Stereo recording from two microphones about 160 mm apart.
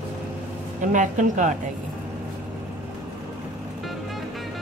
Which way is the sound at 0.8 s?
50° right (ahead or behind).